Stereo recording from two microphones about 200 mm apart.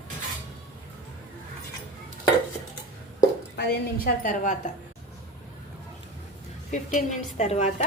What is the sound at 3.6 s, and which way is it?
A woman's voice, 50° left (ahead or behind).